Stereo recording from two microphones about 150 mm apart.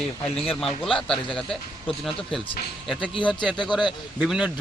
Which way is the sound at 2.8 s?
5° left (ahead or behind).